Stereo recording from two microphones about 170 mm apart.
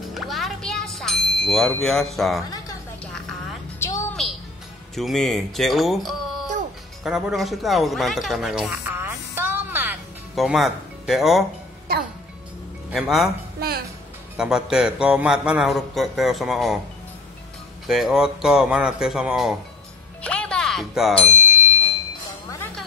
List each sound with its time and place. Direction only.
0.1 s ding: centre (ahead or behind)
3.8 s a sound: 15° left (ahead or behind)
4.9 s speech: centre (ahead or behind)
10.3 s speech: centre (ahead or behind)
12.9 s a man's voice: centre (ahead or behind)
13.6 s music: 65° right (ahead or behind)
14.3 s a man's voice: 5° right (ahead or behind)
17.8 s a man's voice: centre (ahead or behind)
20.2 s music: 5° left (ahead or behind)